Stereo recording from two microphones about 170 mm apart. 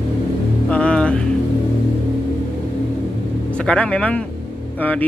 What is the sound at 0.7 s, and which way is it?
Music, 5° left (ahead or behind).